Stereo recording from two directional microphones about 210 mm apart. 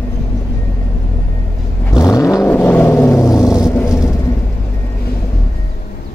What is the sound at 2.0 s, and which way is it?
Vehicle, 15° left (ahead or behind).